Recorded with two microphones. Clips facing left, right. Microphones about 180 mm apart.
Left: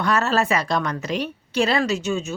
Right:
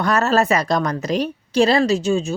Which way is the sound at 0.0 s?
40° right (ahead or behind).